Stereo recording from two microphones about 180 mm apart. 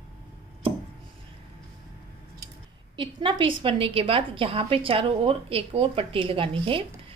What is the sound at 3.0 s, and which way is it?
A woman's voice, 25° right (ahead or behind).